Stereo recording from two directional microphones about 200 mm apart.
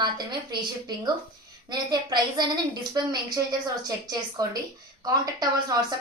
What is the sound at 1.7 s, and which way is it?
A woman's voice, 20° right (ahead or behind).